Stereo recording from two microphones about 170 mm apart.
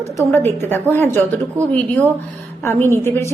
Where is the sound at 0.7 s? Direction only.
10° left (ahead or behind).